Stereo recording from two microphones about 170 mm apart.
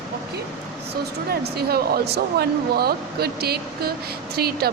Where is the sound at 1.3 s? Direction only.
65° right (ahead or behind).